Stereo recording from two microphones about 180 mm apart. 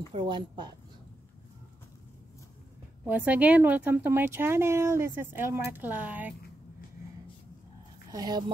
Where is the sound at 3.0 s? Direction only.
10° right (ahead or behind).